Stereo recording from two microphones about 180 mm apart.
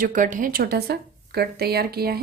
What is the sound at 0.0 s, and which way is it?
A woman's voice, 45° right (ahead or behind).